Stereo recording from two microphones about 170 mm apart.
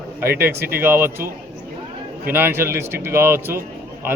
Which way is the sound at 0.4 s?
60° right (ahead or behind).